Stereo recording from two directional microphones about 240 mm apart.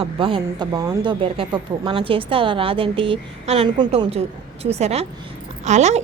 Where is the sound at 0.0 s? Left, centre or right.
Right.